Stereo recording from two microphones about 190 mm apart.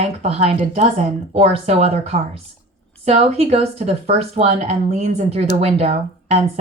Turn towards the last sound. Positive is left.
turn(degrees=-30)  # may be behind; listen again after turning